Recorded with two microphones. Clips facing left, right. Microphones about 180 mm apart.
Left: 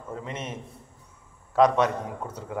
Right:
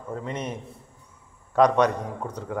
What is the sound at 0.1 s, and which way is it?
Speech, 35° right (ahead or behind).